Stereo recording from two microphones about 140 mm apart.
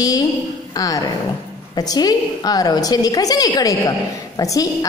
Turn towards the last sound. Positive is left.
turn(degrees=25)  # may be behind; listen again after turning